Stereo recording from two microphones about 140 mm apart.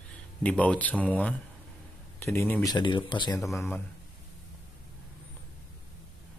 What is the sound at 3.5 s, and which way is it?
Speech, 15° left (ahead or behind).